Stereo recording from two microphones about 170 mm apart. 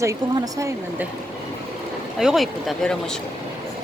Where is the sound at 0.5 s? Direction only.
15° right (ahead or behind).